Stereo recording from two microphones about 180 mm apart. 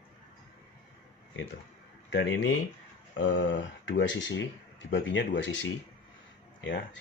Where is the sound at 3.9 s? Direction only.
90° left.